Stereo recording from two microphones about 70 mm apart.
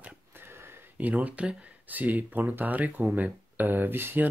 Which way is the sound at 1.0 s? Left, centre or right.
Right.